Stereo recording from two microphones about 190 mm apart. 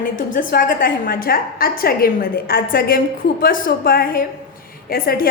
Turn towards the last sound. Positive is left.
turn(degrees=50)  # may be behind; listen again after turning